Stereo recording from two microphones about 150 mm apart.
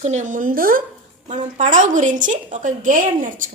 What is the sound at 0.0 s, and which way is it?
Speech, 55° right (ahead or behind).